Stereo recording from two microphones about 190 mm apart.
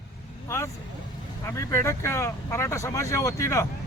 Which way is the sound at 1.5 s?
15° left (ahead or behind).